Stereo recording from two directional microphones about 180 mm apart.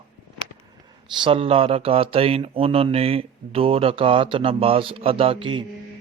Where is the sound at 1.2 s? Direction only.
30° right (ahead or behind).